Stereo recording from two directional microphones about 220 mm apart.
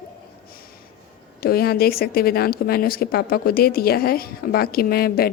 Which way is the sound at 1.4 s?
45° left (ahead or behind).